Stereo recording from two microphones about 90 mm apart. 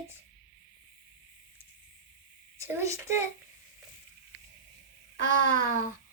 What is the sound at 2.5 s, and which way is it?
Speech, 35° right (ahead or behind).